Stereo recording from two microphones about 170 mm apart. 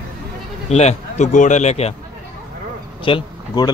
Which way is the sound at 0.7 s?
40° left (ahead or behind).